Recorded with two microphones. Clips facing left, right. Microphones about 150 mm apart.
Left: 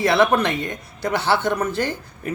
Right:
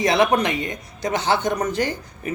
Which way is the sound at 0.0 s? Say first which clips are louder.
Left 1 dB; 15° right (ahead or behind).